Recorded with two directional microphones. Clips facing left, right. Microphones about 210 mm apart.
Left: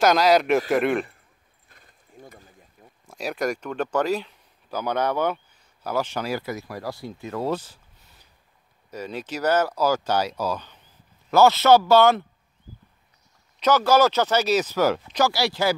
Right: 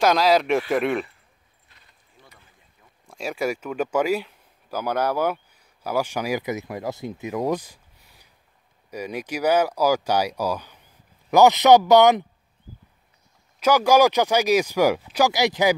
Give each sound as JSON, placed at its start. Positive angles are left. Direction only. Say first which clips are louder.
{"t": 0.0, "sound": "a man's voice", "louder": "even", "side_deg": 0}
{"t": 1.7, "sound": "pulleys", "louder": "left 7 dB", "side_deg": 50}
{"t": 3.1, "sound": "speech", "louder": "even", "side_deg": 0}
{"t": 13.6, "sound": "speech", "louder": "right 2 dB", "side_deg": -10}